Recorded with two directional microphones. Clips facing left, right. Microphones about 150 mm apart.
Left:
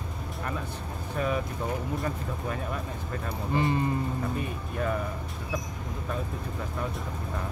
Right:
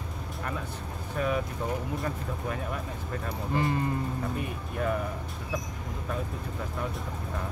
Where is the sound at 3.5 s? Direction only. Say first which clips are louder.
Left 2 dB; 20° left (ahead or behind).